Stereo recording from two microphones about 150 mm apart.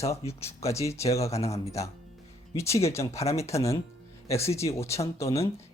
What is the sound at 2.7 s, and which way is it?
Speech, 45° left (ahead or behind).